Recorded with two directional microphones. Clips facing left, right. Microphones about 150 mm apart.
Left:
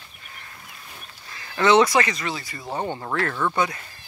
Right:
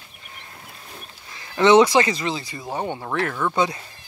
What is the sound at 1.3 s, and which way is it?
Speech, 15° right (ahead or behind).